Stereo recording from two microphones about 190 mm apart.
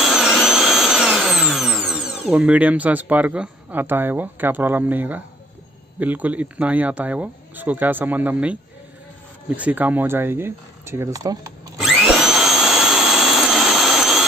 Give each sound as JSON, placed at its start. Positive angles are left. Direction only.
{"t": 0.0, "sound": "drill", "side_deg": 0}
{"t": 5.9, "sound": "speech", "side_deg": -10}
{"t": 9.6, "sound": "speech", "side_deg": -10}
{"t": 11.8, "sound": "vacuum cleaner", "side_deg": 0}